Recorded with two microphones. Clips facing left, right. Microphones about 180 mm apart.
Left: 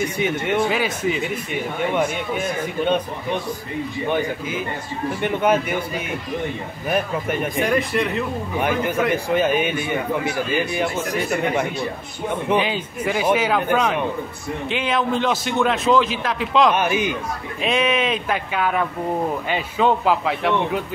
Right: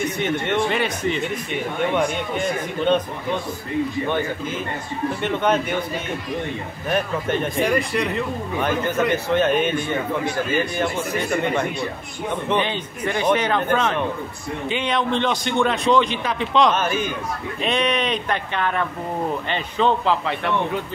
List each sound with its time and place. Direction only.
0.2 s speech: 5° left (ahead or behind)
4.1 s a man's voice: 10° left (ahead or behind)
12.4 s a man's voice: 5° left (ahead or behind)
16.7 s a man's voice: 15° left (ahead or behind)
17.6 s a man's voice: 5° left (ahead or behind)